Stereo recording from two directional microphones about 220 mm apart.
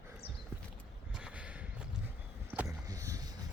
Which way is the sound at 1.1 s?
5° right (ahead or behind).